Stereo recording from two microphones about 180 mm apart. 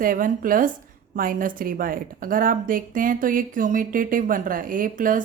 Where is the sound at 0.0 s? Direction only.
50° right (ahead or behind).